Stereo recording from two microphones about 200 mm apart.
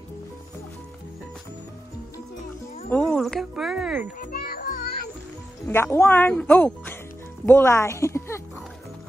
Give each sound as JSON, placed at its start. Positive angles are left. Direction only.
{"t": 2.9, "sound": "speech", "side_deg": 5}
{"t": 4.0, "sound": "music", "side_deg": 45}
{"t": 5.7, "sound": "speech", "side_deg": 10}